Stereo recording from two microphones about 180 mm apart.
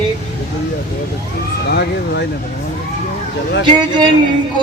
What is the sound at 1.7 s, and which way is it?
Speech, 65° left (ahead or behind).